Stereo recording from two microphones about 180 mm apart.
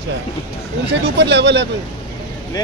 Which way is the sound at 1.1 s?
75° right (ahead or behind).